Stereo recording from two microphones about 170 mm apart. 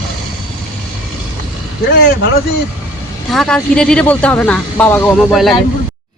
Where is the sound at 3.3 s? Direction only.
Centre (ahead or behind).